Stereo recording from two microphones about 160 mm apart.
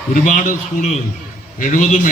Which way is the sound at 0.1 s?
55° left (ahead or behind).